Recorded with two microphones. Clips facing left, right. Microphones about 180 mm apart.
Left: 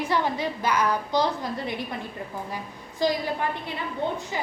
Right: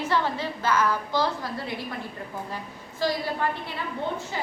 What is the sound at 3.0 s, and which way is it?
Speech, 15° left (ahead or behind).